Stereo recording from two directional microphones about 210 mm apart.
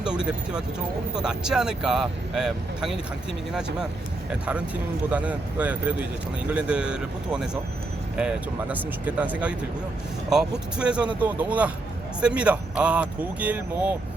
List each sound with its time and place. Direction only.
0.0 s speech: 5° right (ahead or behind)
4.3 s speech: 5° right (ahead or behind)
8.7 s speech: 5° right (ahead or behind)